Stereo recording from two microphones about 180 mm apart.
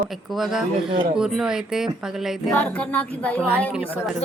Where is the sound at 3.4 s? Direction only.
10° right (ahead or behind).